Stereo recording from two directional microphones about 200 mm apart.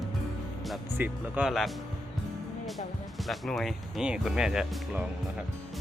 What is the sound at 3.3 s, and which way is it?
Speech, centre (ahead or behind).